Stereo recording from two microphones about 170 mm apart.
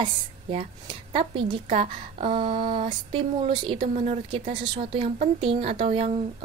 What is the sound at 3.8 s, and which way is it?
A woman's voice, 40° right (ahead or behind).